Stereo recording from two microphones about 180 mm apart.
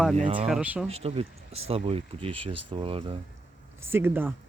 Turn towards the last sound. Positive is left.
turn(degrees=-10)  # may be behind; listen again after turning